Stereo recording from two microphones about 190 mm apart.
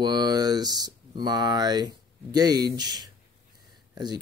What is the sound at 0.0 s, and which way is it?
Speech, 20° right (ahead or behind).